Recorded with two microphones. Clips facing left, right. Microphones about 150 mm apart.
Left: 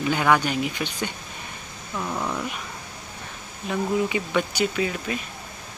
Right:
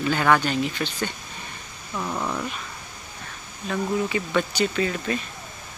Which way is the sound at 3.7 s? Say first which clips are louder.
Left 1 dB; 15° left (ahead or behind).